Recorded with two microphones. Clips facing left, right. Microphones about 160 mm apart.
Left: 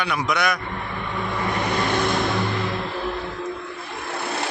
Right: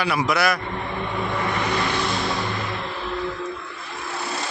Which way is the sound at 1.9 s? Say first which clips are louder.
Left 3 dB; 55° left (ahead or behind).